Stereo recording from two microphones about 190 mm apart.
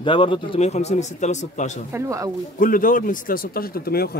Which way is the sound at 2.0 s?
15° right (ahead or behind).